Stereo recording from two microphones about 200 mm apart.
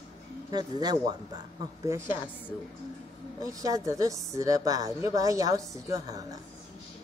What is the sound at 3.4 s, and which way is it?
A woman's voice, 15° right (ahead or behind).